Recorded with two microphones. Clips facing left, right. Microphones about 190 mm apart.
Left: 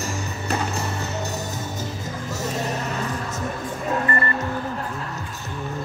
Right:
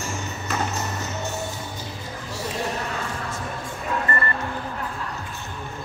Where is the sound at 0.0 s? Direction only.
35° left (ahead or behind).